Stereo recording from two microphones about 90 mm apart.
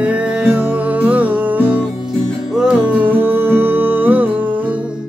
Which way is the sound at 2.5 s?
5° right (ahead or behind).